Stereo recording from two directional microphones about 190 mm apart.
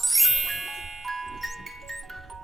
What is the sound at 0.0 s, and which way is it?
Music, centre (ahead or behind).